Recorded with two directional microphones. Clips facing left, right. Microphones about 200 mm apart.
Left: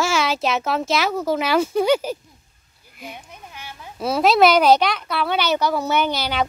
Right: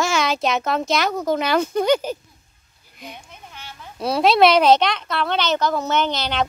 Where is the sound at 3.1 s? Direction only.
10° left (ahead or behind).